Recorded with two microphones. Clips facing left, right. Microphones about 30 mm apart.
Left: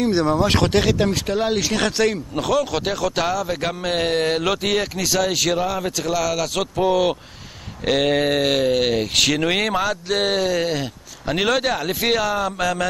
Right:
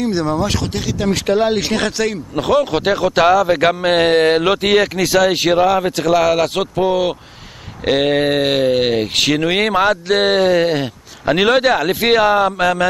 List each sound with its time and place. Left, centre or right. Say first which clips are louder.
0.0 s speech: right 1 dB; centre
0.6 s speech: left 5 dB; left
1.1 s speech: right 6 dB; right
2.4 s speech: right 6 dB; right
5.3 s speech: right 5 dB; right
5.6 s speech: right 8 dB; right
6.8 s speech: right 1 dB; centre
9.6 s speech: right 6 dB; right
9.8 s speech: right 7 dB; right
11.9 s speech: right 6 dB; right
12.2 s speech: right 8 dB; right